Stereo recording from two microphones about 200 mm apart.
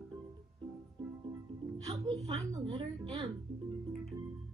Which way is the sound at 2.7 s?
30° right (ahead or behind).